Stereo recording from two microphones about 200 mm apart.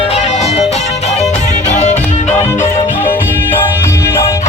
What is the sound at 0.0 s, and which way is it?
Music, 30° left (ahead or behind).